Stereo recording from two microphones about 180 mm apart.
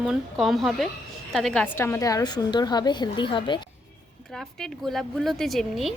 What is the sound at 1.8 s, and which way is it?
A woman's voice, 15° left (ahead or behind).